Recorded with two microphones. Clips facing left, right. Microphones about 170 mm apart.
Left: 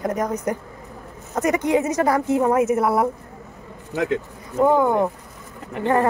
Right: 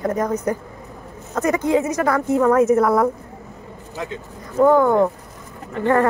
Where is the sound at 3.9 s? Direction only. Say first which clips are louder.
Left 8 dB; 85° left.